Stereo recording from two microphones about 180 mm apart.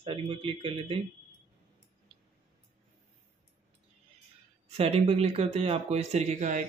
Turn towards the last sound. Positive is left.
turn(degrees=-40)  # may be behind; listen again after turning